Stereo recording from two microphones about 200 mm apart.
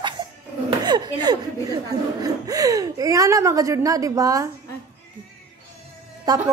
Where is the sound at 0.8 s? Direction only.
20° right (ahead or behind).